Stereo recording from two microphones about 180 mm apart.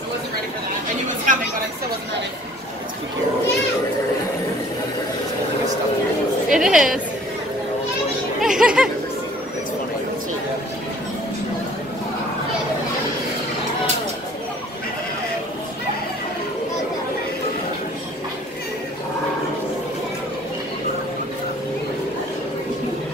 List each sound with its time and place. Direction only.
1.0 s chatter: 45° right (ahead or behind)
6.5 s a woman's voice: centre (ahead or behind)
8.4 s a sound: 5° right (ahead or behind)